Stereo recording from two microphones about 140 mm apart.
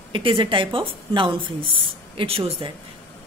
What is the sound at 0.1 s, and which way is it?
Speech, 35° right (ahead or behind).